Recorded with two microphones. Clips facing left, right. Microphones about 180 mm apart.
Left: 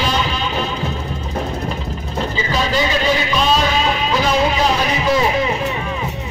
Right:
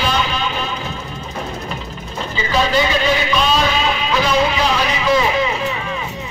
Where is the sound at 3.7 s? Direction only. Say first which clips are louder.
Left 1 dB; 40° left (ahead or behind).